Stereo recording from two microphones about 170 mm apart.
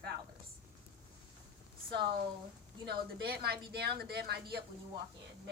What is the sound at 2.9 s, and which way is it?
Speech, 70° right (ahead or behind).